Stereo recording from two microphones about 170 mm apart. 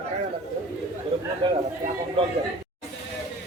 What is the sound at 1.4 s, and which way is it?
Speech, 30° right (ahead or behind).